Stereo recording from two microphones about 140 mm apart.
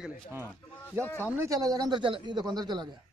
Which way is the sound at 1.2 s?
20° right (ahead or behind).